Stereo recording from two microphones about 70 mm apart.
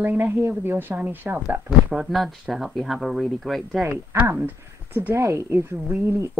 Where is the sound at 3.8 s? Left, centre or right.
Right.